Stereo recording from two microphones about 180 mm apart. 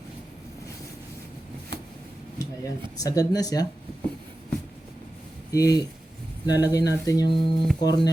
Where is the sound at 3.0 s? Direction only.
20° left (ahead or behind).